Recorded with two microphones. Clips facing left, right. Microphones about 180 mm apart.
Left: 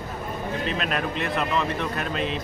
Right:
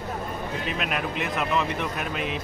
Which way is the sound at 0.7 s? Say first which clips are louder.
Left 1 dB; 10° right (ahead or behind).